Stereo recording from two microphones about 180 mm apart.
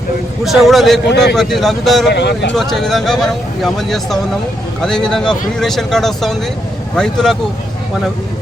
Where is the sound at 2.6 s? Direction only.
Centre (ahead or behind).